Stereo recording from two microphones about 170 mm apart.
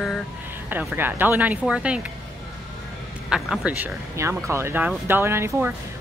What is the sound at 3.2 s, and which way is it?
Speech, centre (ahead or behind).